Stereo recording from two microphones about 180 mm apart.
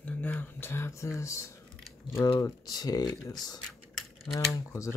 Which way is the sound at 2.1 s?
15° left (ahead or behind).